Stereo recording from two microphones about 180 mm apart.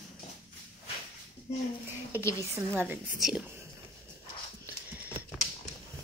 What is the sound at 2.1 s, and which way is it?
Speech, 15° left (ahead or behind).